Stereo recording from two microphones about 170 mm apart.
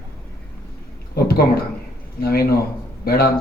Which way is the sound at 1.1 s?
65° left (ahead or behind).